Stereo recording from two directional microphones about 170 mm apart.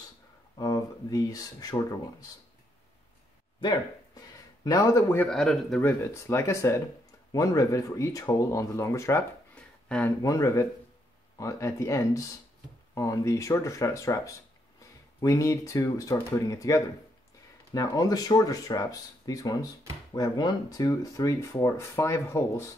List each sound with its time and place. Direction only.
0.6 s speech: 20° left (ahead or behind)
3.6 s speech: 25° left (ahead or behind)
9.6 s a sound: 5° left (ahead or behind)
10.2 s speech: 20° left (ahead or behind)